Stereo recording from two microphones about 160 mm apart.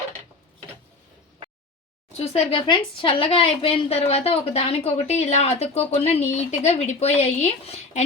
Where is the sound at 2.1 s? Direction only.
40° left (ahead or behind).